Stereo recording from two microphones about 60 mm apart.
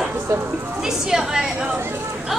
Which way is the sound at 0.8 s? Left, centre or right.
Centre.